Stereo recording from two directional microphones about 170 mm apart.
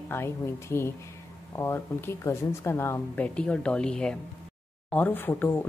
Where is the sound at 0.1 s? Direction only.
15° left (ahead or behind).